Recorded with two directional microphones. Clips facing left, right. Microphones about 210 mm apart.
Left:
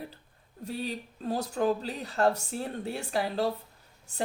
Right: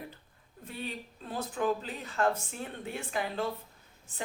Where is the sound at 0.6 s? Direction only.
40° left (ahead or behind).